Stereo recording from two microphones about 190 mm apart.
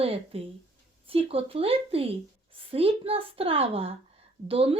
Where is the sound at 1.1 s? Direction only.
30° right (ahead or behind).